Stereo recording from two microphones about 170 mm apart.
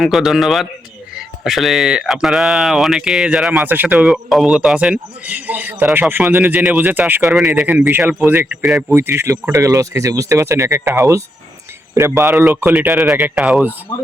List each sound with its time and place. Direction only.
0.0 s speech: centre (ahead or behind)